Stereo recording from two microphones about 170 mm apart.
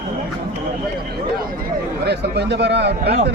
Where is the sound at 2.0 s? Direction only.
80° right.